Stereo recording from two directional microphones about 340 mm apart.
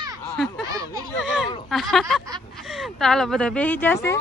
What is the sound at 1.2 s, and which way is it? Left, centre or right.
Speech, centre.